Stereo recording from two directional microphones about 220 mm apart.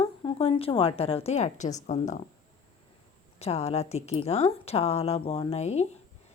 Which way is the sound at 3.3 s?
30° left (ahead or behind).